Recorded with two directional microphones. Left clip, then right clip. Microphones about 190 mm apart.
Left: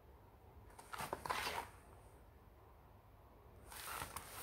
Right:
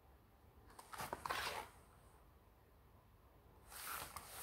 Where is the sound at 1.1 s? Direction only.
25° right (ahead or behind).